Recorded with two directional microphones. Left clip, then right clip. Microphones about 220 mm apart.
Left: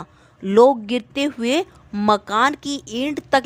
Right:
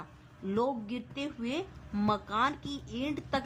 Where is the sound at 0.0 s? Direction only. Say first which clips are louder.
Left 11 dB; 45° left (ahead or behind).